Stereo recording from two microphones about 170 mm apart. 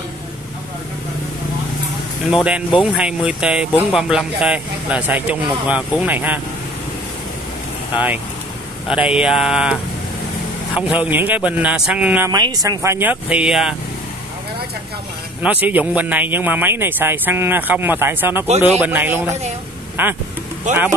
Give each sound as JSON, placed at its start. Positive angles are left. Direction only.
{"t": 2.3, "sound": "speech", "side_deg": -5}
{"t": 7.9, "sound": "speech", "side_deg": -10}
{"t": 11.0, "sound": "speech", "side_deg": -10}
{"t": 12.3, "sound": "speech", "side_deg": -25}
{"t": 15.4, "sound": "speech", "side_deg": -10}
{"t": 20.7, "sound": "speech", "side_deg": -45}